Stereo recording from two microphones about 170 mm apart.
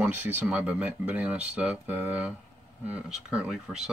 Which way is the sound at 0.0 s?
10° right (ahead or behind).